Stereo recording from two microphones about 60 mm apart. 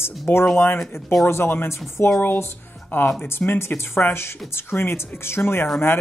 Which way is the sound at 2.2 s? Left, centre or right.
Left.